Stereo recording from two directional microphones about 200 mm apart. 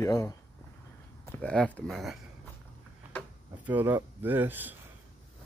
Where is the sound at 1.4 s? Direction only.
5° left (ahead or behind).